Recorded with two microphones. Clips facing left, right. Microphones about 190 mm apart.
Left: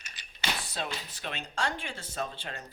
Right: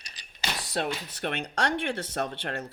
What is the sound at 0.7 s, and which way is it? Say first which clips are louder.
Speech: right 6 dB; 65° right (ahead or behind).